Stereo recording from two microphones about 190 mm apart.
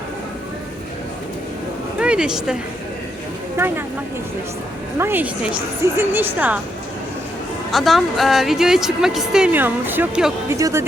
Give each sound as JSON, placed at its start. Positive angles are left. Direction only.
{"t": 2.0, "sound": "speech", "side_deg": -5}
{"t": 4.9, "sound": "a woman's voice", "side_deg": -10}
{"t": 7.7, "sound": "a woman's voice", "side_deg": 0}